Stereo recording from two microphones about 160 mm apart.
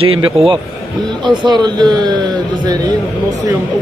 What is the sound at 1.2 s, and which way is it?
Speech, 25° right (ahead or behind).